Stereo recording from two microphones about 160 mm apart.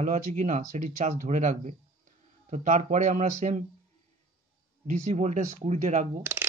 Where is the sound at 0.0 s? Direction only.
50° right (ahead or behind).